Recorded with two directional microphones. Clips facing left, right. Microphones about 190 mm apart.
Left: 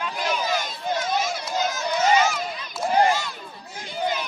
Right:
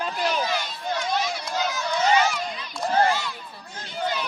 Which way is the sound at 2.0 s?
45° left (ahead or behind).